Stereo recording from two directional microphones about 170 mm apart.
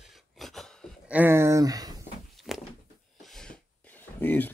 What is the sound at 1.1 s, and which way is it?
Speech, 15° right (ahead or behind).